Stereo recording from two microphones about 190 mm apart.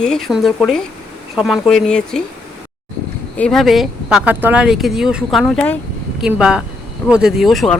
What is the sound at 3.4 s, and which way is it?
Speech, centre (ahead or behind).